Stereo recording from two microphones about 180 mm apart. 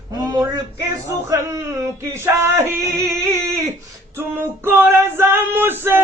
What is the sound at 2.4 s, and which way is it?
Female singing, 15° right (ahead or behind).